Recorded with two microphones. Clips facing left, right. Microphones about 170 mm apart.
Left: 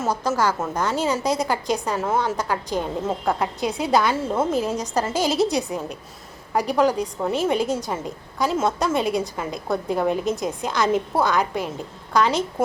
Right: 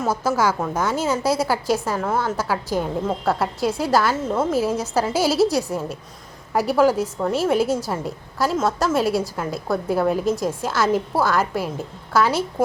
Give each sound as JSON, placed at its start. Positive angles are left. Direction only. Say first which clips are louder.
{"t": 0.2, "sound": "a woman's voice", "louder": "right 2 dB", "side_deg": -10}
{"t": 4.2, "sound": "a woman's voice", "louder": "right 1 dB", "side_deg": 10}
{"t": 4.5, "sound": "a woman's voice", "louder": "right 2 dB", "side_deg": -5}